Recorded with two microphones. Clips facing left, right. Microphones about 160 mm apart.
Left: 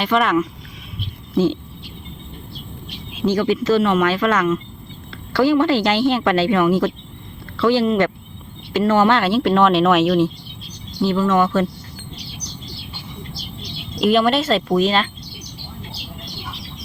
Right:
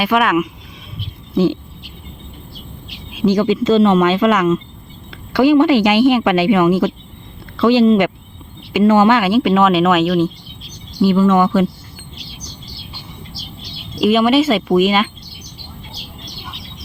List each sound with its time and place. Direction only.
0.0 s speech: 5° right (ahead or behind)
3.2 s a woman's voice: 20° right (ahead or behind)
9.0 s speech: 5° right (ahead or behind)
11.0 s a woman's voice: 10° right (ahead or behind)
13.6 s speech: 5° right (ahead or behind)